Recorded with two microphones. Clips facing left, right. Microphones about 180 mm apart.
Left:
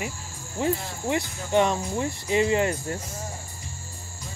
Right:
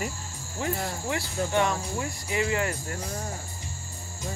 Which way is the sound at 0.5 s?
20° left (ahead or behind).